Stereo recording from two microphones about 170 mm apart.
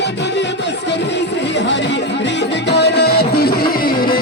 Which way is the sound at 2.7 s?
75° left (ahead or behind).